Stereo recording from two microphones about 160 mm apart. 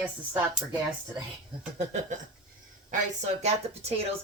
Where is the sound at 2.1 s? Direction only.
50° right (ahead or behind).